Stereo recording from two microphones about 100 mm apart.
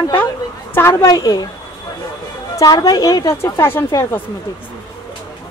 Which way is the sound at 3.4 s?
25° left (ahead or behind).